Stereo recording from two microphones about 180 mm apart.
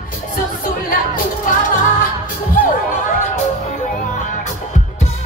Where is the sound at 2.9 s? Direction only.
45° left (ahead or behind).